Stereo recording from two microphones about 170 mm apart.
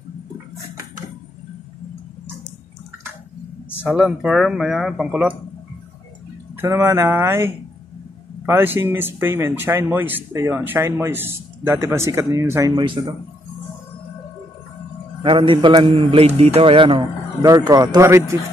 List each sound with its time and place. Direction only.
3.8 s speech: 5° right (ahead or behind)
6.5 s speech: 15° right (ahead or behind)
15.2 s speech: 30° right (ahead or behind)